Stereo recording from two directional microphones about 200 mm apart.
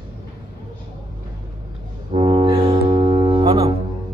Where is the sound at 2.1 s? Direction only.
25° right (ahead or behind).